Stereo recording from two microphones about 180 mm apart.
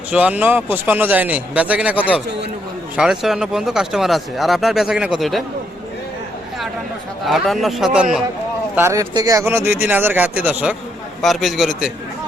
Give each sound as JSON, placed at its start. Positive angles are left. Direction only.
{"t": 0.1, "sound": "a man's voice", "side_deg": -5}
{"t": 7.3, "sound": "speech", "side_deg": 0}
{"t": 8.7, "sound": "a man's voice", "side_deg": -15}